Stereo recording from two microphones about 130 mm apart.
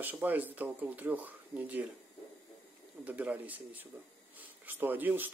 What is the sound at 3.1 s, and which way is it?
Speech, 10° right (ahead or behind).